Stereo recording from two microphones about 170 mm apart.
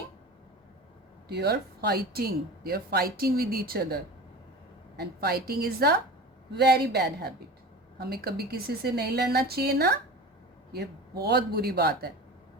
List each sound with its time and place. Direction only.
1.3 s a woman's voice: 75° right (ahead or behind)